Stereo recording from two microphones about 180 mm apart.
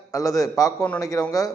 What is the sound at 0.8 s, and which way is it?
Speech, 10° left (ahead or behind).